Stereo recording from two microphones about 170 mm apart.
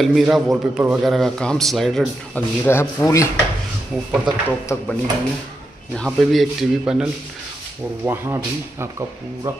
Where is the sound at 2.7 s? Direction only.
15° left (ahead or behind).